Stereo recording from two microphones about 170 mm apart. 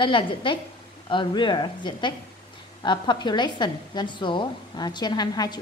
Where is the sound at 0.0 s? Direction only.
30° left (ahead or behind).